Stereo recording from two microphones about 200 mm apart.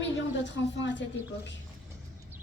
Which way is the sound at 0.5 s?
65° left (ahead or behind).